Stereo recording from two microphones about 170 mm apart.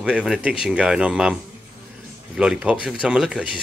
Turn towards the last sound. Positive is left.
turn(degrees=-5)  # may be behind; listen again after turning